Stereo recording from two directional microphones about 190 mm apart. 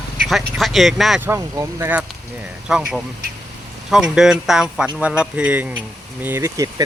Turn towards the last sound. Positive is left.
turn(degrees=-15)  # may be behind; listen again after turning